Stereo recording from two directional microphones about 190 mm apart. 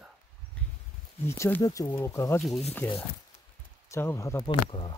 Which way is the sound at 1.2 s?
15° left (ahead or behind).